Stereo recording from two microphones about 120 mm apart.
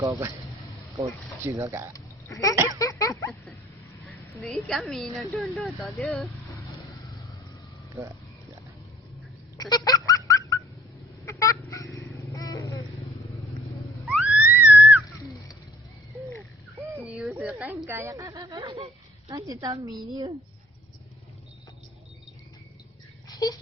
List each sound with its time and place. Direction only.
0.0 s speech: 20° right (ahead or behind)
1.9 s speech: 30° left (ahead or behind)
2.6 s a sound: 30° left (ahead or behind)
4.4 s speech: 5° left (ahead or behind)
9.6 s honk: 35° left (ahead or behind)
11.3 s a sound: 25° left (ahead or behind)
11.7 s vehicle: 25° left (ahead or behind)
14.1 s music: 10° right (ahead or behind)
17.0 s a sound: 10° right (ahead or behind)
17.8 s speech: 20° right (ahead or behind)
23.3 s speech: 30° left (ahead or behind)